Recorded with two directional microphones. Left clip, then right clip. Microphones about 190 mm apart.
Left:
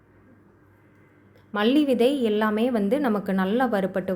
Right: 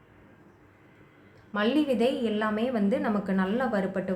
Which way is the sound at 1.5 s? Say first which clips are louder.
Left 4 dB; 40° left (ahead or behind).